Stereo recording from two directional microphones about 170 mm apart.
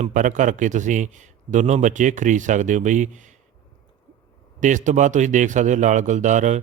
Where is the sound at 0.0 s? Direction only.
50° right (ahead or behind).